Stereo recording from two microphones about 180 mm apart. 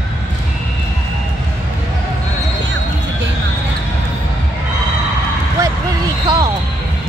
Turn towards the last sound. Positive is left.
turn(degrees=-25)  # may be behind; listen again after turning